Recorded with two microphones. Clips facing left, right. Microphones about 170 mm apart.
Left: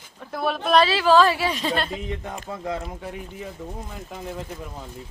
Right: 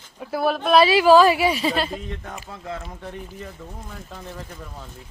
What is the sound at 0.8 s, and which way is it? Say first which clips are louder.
A woman's voice: right 5 dB; 10° right (ahead or behind).